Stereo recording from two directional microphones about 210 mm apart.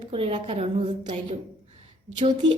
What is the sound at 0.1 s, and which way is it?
Speech, 25° right (ahead or behind).